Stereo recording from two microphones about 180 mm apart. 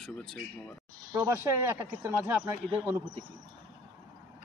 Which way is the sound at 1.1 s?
15° right (ahead or behind).